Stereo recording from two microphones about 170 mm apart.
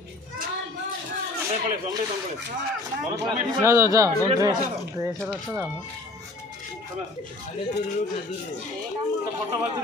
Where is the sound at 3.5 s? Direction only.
15° right (ahead or behind).